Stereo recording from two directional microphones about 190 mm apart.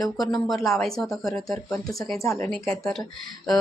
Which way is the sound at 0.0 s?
Centre (ahead or behind).